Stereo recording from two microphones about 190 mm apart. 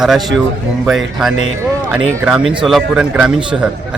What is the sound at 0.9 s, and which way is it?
Speech, centre (ahead or behind).